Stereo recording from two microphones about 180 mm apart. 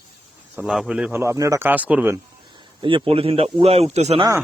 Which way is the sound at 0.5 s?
5° right (ahead or behind).